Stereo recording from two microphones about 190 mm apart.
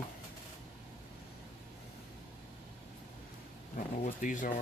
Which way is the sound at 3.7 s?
45° left (ahead or behind).